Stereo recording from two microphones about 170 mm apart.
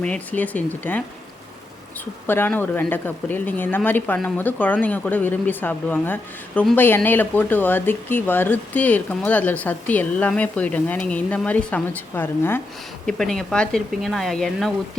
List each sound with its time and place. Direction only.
0.0 s speech: 10° left (ahead or behind)
2.2 s speech: 10° left (ahead or behind)